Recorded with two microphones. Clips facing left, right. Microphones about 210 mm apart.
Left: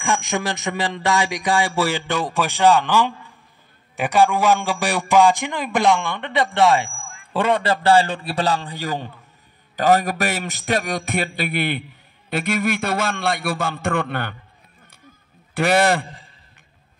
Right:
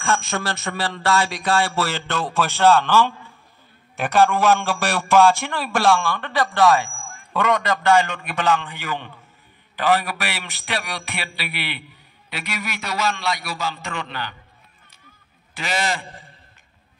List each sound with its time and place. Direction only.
0.0 s a man's voice: 15° left (ahead or behind); by 14.3 s 55° left (ahead or behind)
15.5 s a man's voice: 60° left (ahead or behind)